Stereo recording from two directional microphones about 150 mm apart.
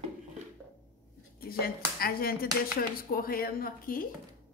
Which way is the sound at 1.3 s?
85° left.